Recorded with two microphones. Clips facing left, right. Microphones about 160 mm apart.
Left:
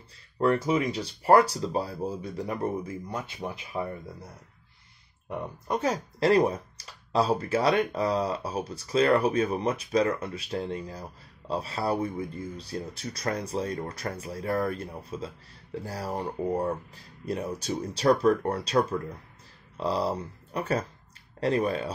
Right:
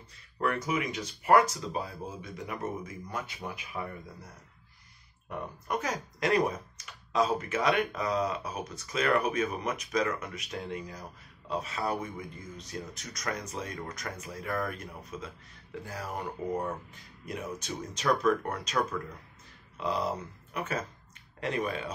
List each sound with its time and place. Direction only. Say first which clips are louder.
0.4 s speech: left 6 dB; 30° left (ahead or behind)
5.3 s speech: left 3 dB; 30° left (ahead or behind)